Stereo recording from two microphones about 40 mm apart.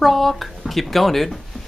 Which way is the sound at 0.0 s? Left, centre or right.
Centre.